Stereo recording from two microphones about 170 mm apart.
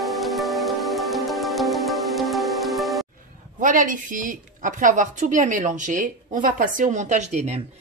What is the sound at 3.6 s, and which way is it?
A woman's voice, 50° right (ahead or behind).